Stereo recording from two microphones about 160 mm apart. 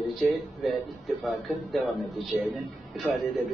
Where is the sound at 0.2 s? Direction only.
Centre (ahead or behind).